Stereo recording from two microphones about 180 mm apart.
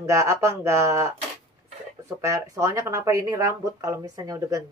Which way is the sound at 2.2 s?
15° right (ahead or behind).